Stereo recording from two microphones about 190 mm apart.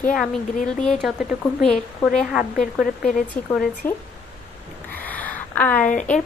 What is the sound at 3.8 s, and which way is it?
Speech, 10° left (ahead or behind).